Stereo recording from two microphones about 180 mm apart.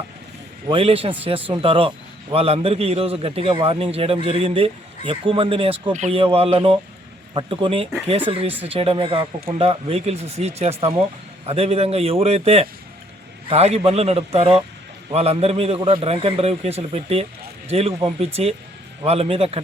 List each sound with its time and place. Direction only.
0.7 s a man's voice: 30° right (ahead or behind)